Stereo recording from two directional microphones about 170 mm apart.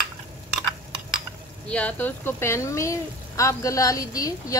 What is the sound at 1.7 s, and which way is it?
Speech, 10° left (ahead or behind).